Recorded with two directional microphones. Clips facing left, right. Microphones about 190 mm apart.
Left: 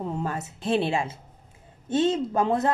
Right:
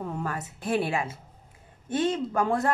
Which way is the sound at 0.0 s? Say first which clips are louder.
Left 2 dB; 25° left (ahead or behind).